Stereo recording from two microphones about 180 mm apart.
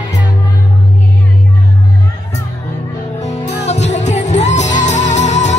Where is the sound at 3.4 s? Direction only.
40° left (ahead or behind).